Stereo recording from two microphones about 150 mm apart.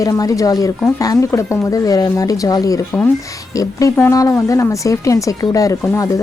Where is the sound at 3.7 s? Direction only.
20° left (ahead or behind).